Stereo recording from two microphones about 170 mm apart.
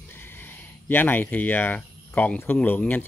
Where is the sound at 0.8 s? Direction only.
10° left (ahead or behind).